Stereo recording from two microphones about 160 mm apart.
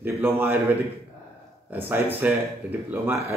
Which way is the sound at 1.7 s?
10° right (ahead or behind).